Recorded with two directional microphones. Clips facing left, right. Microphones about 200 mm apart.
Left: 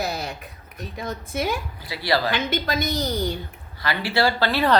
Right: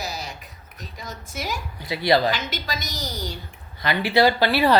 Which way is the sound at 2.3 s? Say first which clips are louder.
Left 3 dB; 55° left (ahead or behind).